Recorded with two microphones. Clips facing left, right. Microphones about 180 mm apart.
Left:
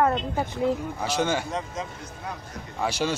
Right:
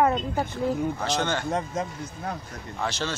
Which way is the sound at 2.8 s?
10° left (ahead or behind).